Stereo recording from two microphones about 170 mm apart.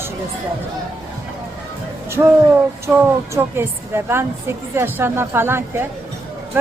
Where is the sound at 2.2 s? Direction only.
10° right (ahead or behind).